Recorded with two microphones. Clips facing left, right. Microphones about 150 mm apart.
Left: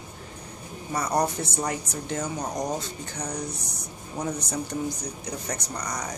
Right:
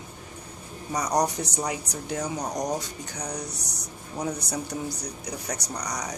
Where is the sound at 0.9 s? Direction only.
15° right (ahead or behind).